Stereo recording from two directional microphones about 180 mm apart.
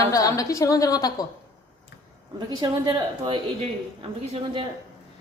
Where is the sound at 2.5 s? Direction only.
25° right (ahead or behind).